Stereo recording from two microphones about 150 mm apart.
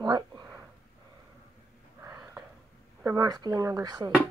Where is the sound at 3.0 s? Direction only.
20° right (ahead or behind).